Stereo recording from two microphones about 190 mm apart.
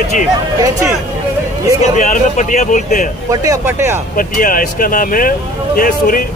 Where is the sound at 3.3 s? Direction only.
15° right (ahead or behind).